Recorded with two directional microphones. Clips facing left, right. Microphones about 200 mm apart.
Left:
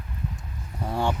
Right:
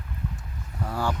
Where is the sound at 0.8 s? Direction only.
25° left (ahead or behind).